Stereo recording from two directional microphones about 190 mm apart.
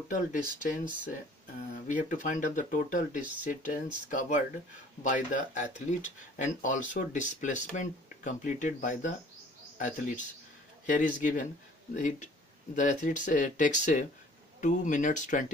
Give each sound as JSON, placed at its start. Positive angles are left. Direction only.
{"t": 0.1, "sound": "speech", "side_deg": 40}